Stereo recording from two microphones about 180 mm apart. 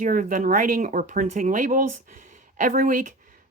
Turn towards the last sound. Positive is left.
turn(degrees=-50)  # may be behind; listen again after turning